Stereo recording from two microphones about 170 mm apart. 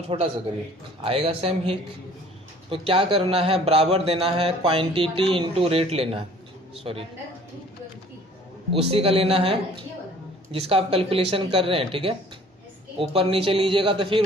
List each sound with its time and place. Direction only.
0.1 s a man's voice: 30° right (ahead or behind)
8.7 s a man's voice: 35° right (ahead or behind)
10.7 s a man's voice: 35° right (ahead or behind)